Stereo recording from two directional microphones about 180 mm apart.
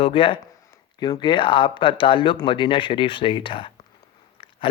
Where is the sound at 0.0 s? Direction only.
30° left (ahead or behind).